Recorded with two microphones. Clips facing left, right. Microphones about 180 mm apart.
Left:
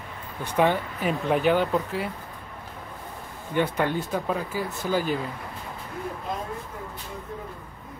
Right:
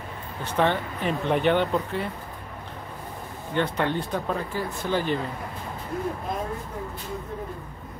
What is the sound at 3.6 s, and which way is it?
Speech, 10° left (ahead or behind).